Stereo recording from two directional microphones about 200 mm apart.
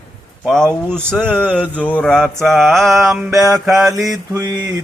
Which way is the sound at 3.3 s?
15° right (ahead or behind).